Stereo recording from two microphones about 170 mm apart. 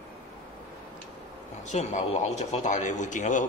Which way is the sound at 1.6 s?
45° left (ahead or behind).